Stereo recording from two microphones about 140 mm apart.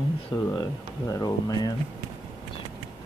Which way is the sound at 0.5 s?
25° left (ahead or behind).